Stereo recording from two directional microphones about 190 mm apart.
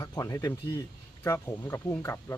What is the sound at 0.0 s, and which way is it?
Speech, 15° left (ahead or behind).